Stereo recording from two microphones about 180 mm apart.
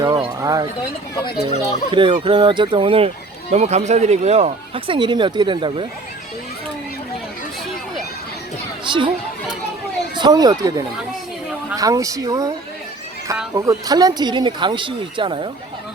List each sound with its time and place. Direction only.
0.0 s speech: 20° right (ahead or behind)
1.9 s speech: 25° right (ahead or behind)
8.8 s speech: 25° right (ahead or behind)
10.2 s speech: 20° right (ahead or behind)
13.5 s speech: 20° right (ahead or behind)